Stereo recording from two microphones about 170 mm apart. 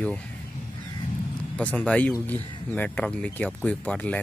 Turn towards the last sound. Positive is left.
turn(degrees=10)  # may be behind; listen again after turning